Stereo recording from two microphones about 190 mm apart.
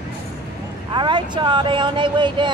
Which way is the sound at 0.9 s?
25° right (ahead or behind).